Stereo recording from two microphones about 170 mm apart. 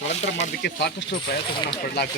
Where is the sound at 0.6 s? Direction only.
90° left.